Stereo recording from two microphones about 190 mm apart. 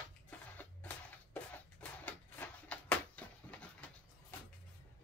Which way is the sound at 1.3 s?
5° left (ahead or behind).